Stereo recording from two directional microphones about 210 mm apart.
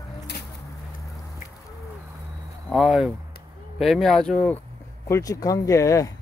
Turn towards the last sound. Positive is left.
turn(degrees=15)  # may be behind; listen again after turning